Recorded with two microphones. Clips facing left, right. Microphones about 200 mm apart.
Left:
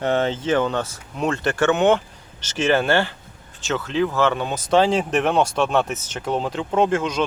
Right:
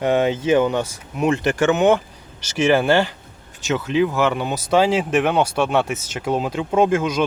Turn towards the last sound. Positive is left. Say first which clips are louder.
# right 2 dB
turn(degrees=-10)  # may be behind; listen again after turning